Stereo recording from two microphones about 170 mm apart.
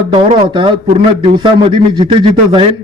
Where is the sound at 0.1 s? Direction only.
30° right (ahead or behind).